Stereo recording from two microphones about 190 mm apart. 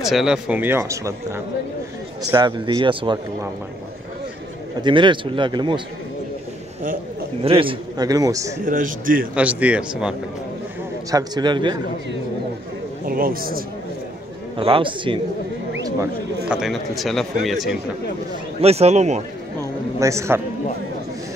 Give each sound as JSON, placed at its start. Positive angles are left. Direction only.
{"t": 0.0, "sound": "a man's voice", "side_deg": 0}
{"t": 4.8, "sound": "a man's voice", "side_deg": -25}
{"t": 7.4, "sound": "a man's voice", "side_deg": -30}
{"t": 8.6, "sound": "speech", "side_deg": -45}
{"t": 9.3, "sound": "speech", "side_deg": -5}
{"t": 11.1, "sound": "a man's voice", "side_deg": -20}
{"t": 13.0, "sound": "speech", "side_deg": -50}
{"t": 14.6, "sound": "a man's voice", "side_deg": -25}
{"t": 16.4, "sound": "a man's voice", "side_deg": -5}
{"t": 18.6, "sound": "speech", "side_deg": -35}
{"t": 20.0, "sound": "speech", "side_deg": -15}